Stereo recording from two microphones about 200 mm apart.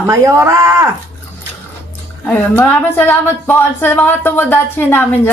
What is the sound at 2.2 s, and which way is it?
Speech, 10° left (ahead or behind).